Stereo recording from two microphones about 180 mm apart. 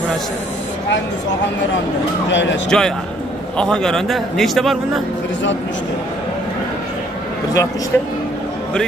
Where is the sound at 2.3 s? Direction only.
90° left.